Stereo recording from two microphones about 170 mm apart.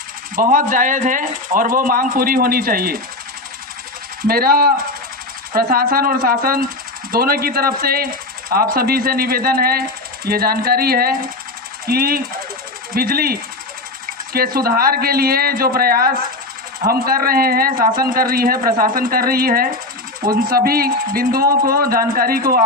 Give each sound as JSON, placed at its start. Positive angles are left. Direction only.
{"t": 0.3, "sound": "speech", "side_deg": -50}
{"t": 4.3, "sound": "speech", "side_deg": -60}